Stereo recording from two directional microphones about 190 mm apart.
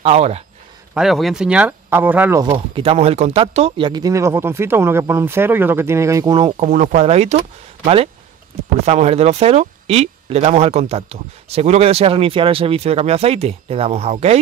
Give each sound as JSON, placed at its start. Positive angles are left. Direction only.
{"t": 0.0, "sound": "speech", "side_deg": -35}
{"t": 0.9, "sound": "speech", "side_deg": 0}
{"t": 2.5, "sound": "speech", "side_deg": -30}